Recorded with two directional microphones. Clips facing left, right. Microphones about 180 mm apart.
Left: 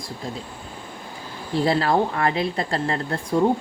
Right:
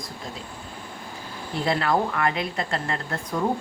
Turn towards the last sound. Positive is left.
turn(degrees=30)  # may be behind; listen again after turning